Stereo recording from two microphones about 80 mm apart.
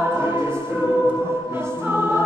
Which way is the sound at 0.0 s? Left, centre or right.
Right.